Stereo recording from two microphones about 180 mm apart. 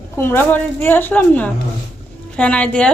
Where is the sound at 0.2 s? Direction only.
15° left (ahead or behind).